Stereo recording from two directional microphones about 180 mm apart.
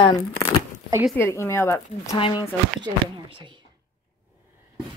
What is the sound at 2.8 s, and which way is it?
Speech, 25° right (ahead or behind).